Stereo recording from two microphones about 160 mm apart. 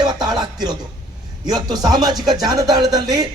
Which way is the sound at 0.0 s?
25° right (ahead or behind).